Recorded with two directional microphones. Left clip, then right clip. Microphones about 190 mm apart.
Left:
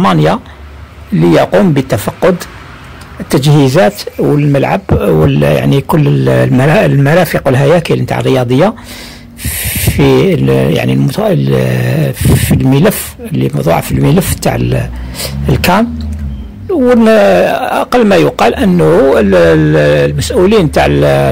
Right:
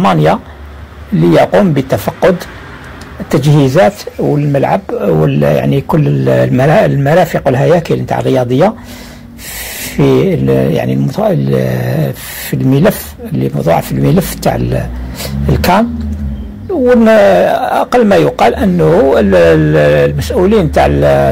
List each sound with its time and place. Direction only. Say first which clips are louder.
0.0 s speech: even; 35° left (ahead or behind)
3.3 s speech: left 1 dB; 40° left (ahead or behind)
17.0 s speech: right 1 dB; 35° left (ahead or behind)